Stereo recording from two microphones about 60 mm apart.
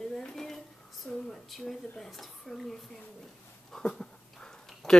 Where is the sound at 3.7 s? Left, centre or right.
Centre.